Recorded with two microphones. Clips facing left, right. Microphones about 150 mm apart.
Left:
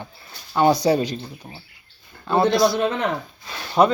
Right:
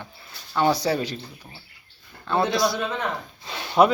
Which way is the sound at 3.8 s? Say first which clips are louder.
Left 1 dB; centre (ahead or behind).